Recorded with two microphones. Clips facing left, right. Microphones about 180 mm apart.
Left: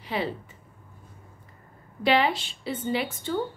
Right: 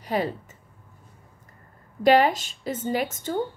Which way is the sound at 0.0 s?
45° right (ahead or behind).